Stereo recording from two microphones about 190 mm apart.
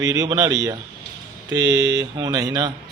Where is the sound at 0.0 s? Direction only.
15° right (ahead or behind).